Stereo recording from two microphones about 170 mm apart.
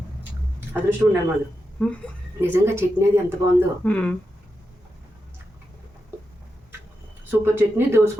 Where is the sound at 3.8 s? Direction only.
5° left (ahead or behind).